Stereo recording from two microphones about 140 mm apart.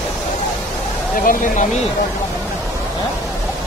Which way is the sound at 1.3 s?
70° left (ahead or behind).